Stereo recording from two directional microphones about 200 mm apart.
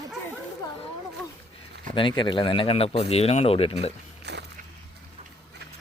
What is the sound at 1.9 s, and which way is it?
Speech, 25° left (ahead or behind).